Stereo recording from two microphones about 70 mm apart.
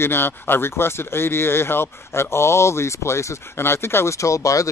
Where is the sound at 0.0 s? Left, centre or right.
Left.